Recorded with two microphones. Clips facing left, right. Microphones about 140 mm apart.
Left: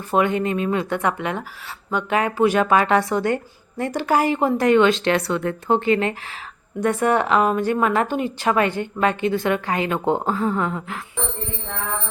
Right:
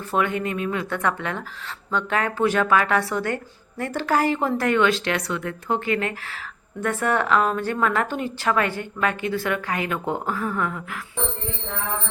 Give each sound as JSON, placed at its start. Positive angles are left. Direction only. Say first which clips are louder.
{"t": 0.1, "sound": "a woman's voice", "louder": "left 4 dB", "side_deg": 20}